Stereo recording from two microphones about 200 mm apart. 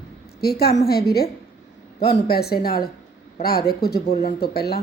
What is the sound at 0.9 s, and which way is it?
Speech, 50° left (ahead or behind).